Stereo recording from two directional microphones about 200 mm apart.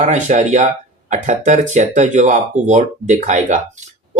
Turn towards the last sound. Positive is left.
turn(degrees=-40)  # may be behind; listen again after turning